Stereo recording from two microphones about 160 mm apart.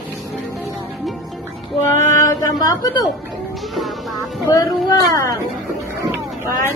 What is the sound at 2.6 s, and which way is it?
Speech, 25° left (ahead or behind).